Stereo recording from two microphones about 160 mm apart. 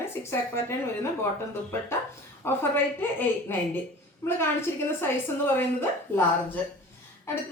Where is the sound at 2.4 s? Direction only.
15° left (ahead or behind).